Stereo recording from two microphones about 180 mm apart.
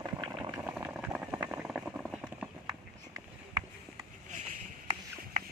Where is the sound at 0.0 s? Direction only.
20° right (ahead or behind).